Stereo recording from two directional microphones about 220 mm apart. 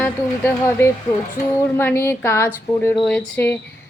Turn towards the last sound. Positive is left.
turn(degrees=10)  # may be behind; listen again after turning